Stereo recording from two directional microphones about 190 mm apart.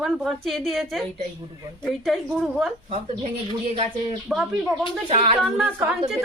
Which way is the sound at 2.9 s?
35° right (ahead or behind).